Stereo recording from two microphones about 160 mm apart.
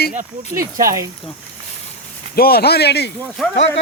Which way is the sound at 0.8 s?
20° right (ahead or behind).